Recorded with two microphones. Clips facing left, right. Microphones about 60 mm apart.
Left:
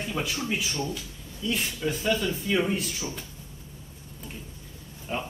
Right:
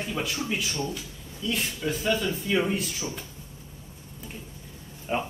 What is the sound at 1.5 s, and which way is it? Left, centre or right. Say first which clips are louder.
Speech: even; centre.